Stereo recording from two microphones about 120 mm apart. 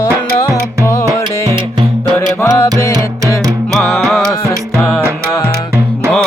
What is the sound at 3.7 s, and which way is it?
Music, centre (ahead or behind).